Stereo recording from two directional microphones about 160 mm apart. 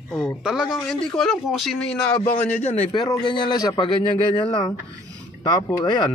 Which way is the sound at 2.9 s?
25° left (ahead or behind).